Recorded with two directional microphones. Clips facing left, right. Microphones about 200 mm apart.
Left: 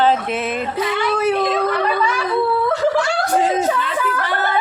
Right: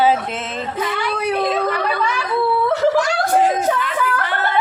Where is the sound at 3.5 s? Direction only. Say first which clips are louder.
Left 1 dB; 30° left (ahead or behind).